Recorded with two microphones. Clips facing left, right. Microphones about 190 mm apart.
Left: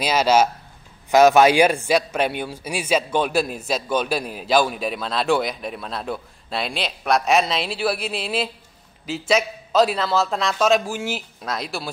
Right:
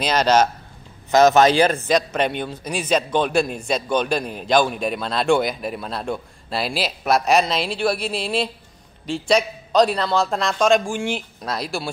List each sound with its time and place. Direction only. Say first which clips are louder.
0.0 s a man's voice: even; 5° left (ahead or behind)